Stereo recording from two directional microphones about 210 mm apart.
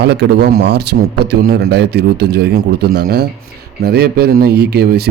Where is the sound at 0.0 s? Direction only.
50° right (ahead or behind).